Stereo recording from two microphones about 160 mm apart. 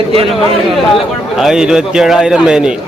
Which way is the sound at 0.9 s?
Centre (ahead or behind).